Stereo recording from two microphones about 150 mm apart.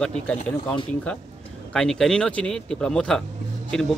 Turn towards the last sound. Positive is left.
turn(degrees=5)  # may be behind; listen again after turning